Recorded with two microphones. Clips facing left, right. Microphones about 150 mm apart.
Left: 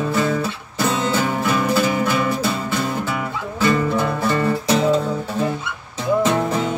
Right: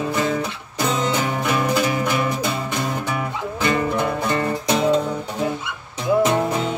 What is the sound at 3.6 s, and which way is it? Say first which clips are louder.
Music: left 3 dB; 15° right (ahead or behind).